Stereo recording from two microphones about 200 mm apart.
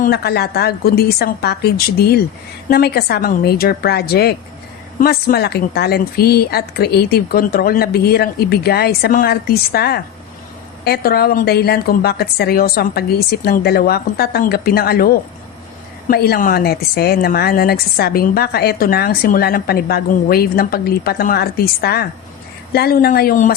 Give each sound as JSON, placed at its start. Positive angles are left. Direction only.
{"t": 0.0, "sound": "a woman's voice", "side_deg": 50}